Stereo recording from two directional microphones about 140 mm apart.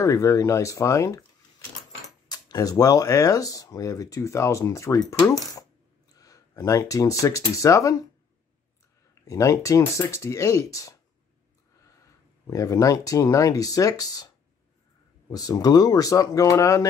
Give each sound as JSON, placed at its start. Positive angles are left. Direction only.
{"t": 0.0, "sound": "speech", "side_deg": 25}
{"t": 2.2, "sound": "speech", "side_deg": 25}
{"t": 9.2, "sound": "speech", "side_deg": 20}
{"t": 12.4, "sound": "speech", "side_deg": 25}